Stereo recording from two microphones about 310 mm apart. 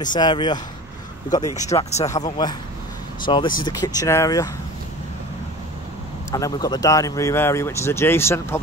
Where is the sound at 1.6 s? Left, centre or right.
Left.